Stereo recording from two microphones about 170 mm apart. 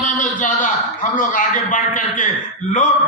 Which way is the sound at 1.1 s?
50° left (ahead or behind).